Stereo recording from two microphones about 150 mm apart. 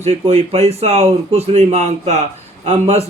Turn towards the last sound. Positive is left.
turn(degrees=-45)  # may be behind; listen again after turning